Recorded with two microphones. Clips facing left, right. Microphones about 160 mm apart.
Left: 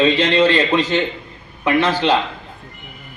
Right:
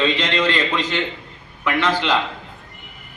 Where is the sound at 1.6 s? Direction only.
40° left (ahead or behind).